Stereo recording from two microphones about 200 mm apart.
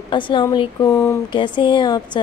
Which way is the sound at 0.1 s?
20° left (ahead or behind).